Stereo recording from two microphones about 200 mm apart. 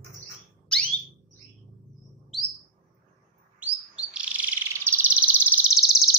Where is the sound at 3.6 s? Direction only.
5° right (ahead or behind).